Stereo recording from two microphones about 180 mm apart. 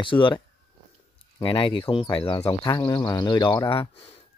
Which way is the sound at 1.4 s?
30° left (ahead or behind).